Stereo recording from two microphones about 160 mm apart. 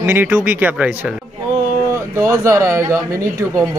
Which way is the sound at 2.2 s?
20° right (ahead or behind).